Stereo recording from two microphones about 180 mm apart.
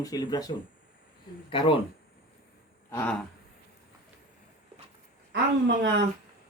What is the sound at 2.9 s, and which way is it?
Speech, 15° left (ahead or behind).